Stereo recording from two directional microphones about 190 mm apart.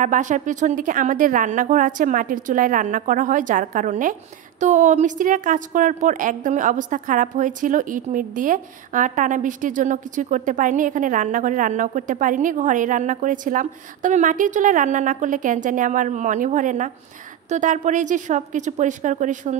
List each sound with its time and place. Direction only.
0.0 s a woman's voice: 40° right (ahead or behind)